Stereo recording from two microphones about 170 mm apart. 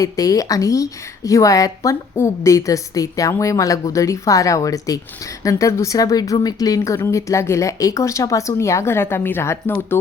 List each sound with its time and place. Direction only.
0.0 s a woman's voice: 20° left (ahead or behind)